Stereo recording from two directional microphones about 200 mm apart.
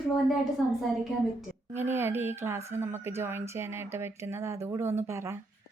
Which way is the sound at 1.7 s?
10° right (ahead or behind).